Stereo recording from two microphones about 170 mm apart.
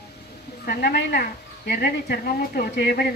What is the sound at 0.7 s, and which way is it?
Speech, 65° left (ahead or behind).